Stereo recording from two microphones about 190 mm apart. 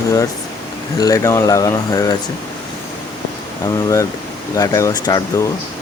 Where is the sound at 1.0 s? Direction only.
15° left (ahead or behind).